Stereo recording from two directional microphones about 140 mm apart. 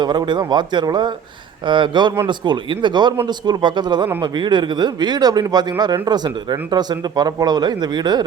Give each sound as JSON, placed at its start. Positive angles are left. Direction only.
{"t": 0.0, "sound": "a man's voice", "side_deg": -30}